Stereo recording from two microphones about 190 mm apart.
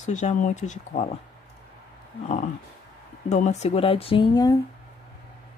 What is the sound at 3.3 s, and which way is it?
Speech, 35° left (ahead or behind).